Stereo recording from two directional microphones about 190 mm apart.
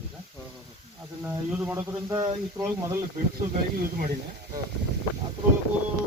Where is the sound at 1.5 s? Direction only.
10° right (ahead or behind).